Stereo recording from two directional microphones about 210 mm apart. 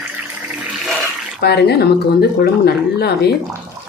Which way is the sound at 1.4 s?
50° left (ahead or behind).